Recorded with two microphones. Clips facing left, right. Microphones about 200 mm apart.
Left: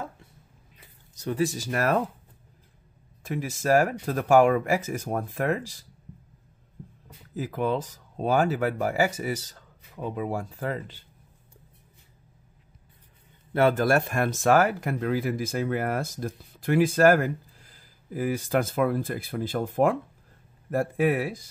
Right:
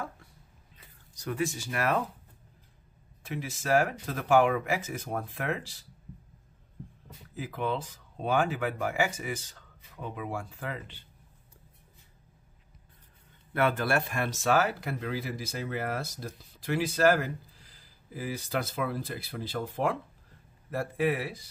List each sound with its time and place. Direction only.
1.1 s speech: 30° left (ahead or behind)
3.3 s speech: 45° left (ahead or behind)
7.3 s speech: 40° left (ahead or behind)
13.5 s speech: 35° left (ahead or behind)